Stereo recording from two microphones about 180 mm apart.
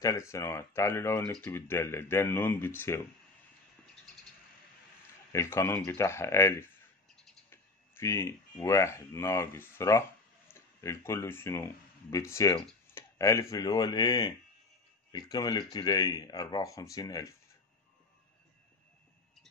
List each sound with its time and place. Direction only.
0.0 s speech: 15° left (ahead or behind)
5.3 s speech: 15° left (ahead or behind)